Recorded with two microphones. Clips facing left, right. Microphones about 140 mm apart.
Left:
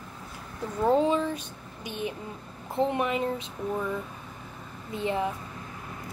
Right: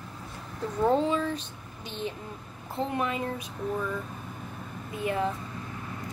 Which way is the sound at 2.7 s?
20° left (ahead or behind).